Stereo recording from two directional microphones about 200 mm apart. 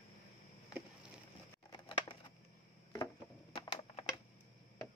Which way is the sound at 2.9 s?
20° left (ahead or behind).